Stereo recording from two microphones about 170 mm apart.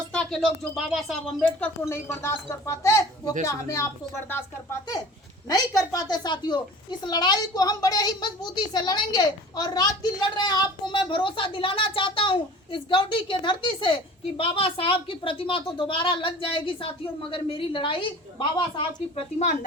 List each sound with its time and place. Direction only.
0.1 s a woman's voice: 5° left (ahead or behind)
5.9 s a woman's voice: 20° left (ahead or behind)
18.9 s speech: 45° left (ahead or behind)